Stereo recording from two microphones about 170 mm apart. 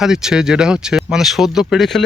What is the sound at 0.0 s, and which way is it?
Speech, 5° right (ahead or behind).